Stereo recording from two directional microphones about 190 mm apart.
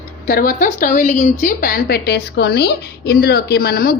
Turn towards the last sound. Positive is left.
turn(degrees=55)  # may be behind; listen again after turning